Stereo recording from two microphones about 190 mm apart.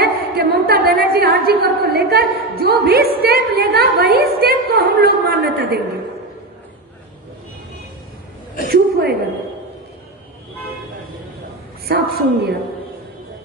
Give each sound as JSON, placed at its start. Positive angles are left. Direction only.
{"t": 0.0, "sound": "a woman's voice", "side_deg": -55}
{"t": 8.6, "sound": "a sound", "side_deg": -55}
{"t": 11.9, "sound": "a woman's voice", "side_deg": -55}